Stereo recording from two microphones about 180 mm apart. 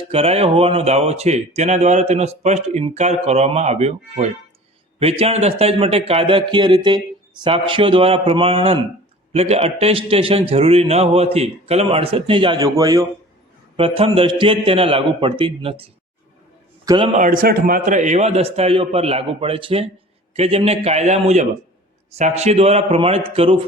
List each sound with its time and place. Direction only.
0.1 s speech: 35° right (ahead or behind); by 13.1 s 20° right (ahead or behind)
13.7 s speech: 30° right (ahead or behind)
16.8 s a man's voice: 25° right (ahead or behind)
17.2 s speech: 50° right (ahead or behind); by 23.6 s 30° right (ahead or behind)